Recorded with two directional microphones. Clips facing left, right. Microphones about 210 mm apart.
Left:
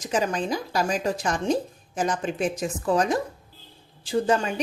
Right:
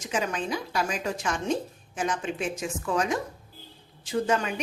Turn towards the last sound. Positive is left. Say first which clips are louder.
# left 3 dB
turn(degrees=30)  # may be behind; listen again after turning